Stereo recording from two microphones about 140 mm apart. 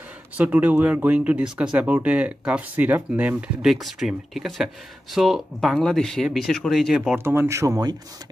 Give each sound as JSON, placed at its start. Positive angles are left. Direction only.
{"t": 0.4, "sound": "speech", "side_deg": -10}
{"t": 7.2, "sound": "speech", "side_deg": -20}